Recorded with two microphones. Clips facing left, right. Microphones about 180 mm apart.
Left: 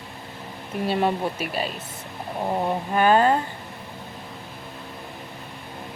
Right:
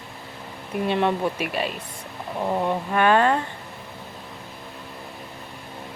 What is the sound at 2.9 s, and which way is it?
Speech, 35° left (ahead or behind).